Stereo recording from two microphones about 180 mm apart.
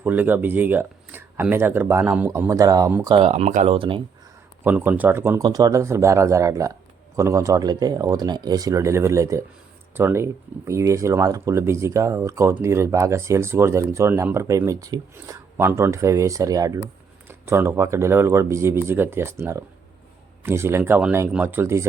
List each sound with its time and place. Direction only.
0.0 s speech: 10° right (ahead or behind)
3.2 s speech: 35° right (ahead or behind)
4.6 s speech: 10° right (ahead or behind)